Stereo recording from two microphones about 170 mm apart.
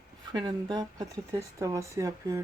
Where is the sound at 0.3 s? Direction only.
25° right (ahead or behind).